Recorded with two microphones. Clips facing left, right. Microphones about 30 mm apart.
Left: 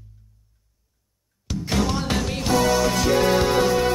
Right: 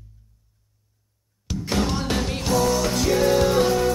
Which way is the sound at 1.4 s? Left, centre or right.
Centre.